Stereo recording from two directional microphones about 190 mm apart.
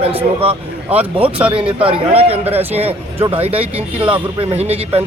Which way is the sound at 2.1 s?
30° right (ahead or behind).